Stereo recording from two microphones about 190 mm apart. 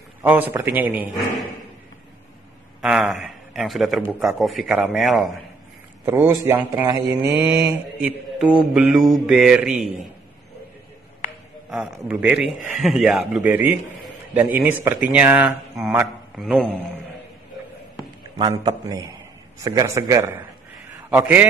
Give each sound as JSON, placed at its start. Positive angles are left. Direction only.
{"t": 0.2, "sound": "speech", "side_deg": -10}
{"t": 2.8, "sound": "a man's voice", "side_deg": 0}
{"t": 6.0, "sound": "speech", "side_deg": -10}
{"t": 11.7, "sound": "speech", "side_deg": -5}
{"t": 16.3, "sound": "a man's voice", "side_deg": 0}
{"t": 18.4, "sound": "a man's voice", "side_deg": -20}